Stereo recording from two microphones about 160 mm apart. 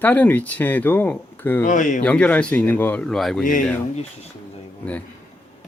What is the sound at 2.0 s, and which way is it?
A man's voice, 10° left (ahead or behind).